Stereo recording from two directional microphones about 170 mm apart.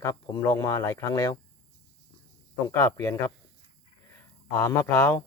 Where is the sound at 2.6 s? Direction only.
15° left (ahead or behind).